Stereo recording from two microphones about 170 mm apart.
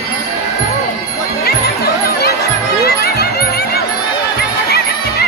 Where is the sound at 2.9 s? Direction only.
70° left (ahead or behind).